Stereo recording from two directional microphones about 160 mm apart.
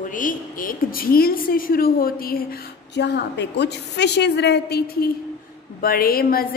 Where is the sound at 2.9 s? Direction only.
90° left.